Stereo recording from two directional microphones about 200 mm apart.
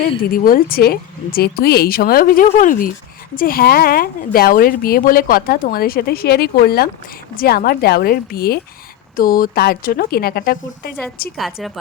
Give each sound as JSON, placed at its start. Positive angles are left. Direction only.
{"t": 0.3, "sound": "a woman's voice", "side_deg": 45}